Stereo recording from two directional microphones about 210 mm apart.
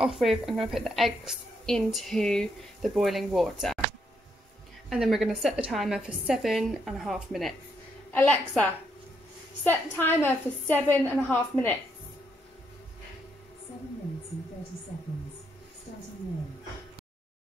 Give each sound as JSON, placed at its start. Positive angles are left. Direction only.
{"t": 0.0, "sound": "a woman's voice", "side_deg": 0}
{"t": 4.8, "sound": "a woman's voice", "side_deg": 0}
{"t": 9.7, "sound": "a woman's voice", "side_deg": 10}